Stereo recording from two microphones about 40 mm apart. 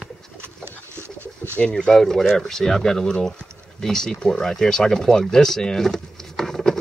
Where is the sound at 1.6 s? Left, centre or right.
Left.